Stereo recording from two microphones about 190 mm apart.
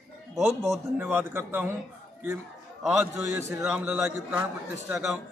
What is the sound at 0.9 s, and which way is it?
Speech, 10° right (ahead or behind).